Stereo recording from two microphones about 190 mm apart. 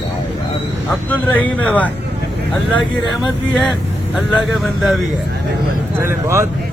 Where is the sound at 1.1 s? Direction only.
10° left (ahead or behind).